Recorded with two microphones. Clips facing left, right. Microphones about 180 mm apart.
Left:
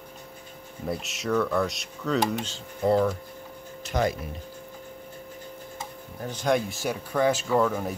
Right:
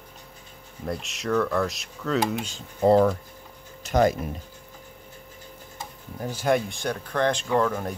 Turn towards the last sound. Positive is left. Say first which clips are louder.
# even
turn(degrees=5)  # may be behind; listen again after turning